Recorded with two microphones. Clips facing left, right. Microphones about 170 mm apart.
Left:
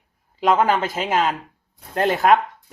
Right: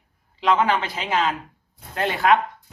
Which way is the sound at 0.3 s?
45° left (ahead or behind).